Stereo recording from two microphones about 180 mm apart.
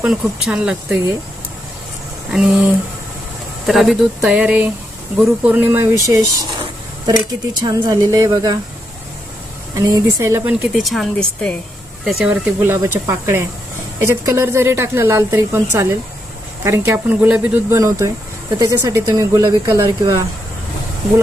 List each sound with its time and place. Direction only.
0.0 s speech: 5° right (ahead or behind)
2.3 s speech: 5° right (ahead or behind)
3.7 s speech: centre (ahead or behind); by 8.5 s 20° right (ahead or behind)
9.7 s a woman's voice: 15° right (ahead or behind)